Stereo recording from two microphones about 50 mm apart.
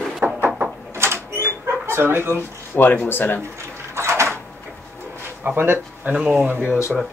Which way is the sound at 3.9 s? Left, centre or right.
Right.